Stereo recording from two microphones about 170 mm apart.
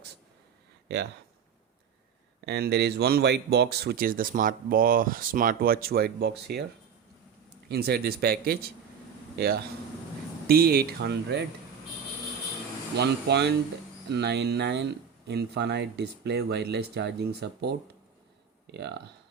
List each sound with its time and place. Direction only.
2.5 s speech: 75° right (ahead or behind)
7.7 s speech: 70° right (ahead or behind)
13.0 s speech: 80° right
15.3 s speech: 75° right (ahead or behind)